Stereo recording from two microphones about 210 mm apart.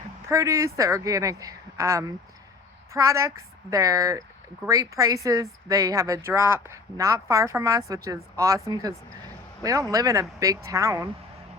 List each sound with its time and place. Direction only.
0.3 s speech: 15° right (ahead or behind)